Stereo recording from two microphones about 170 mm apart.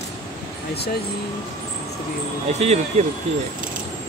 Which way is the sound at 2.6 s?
40° right (ahead or behind).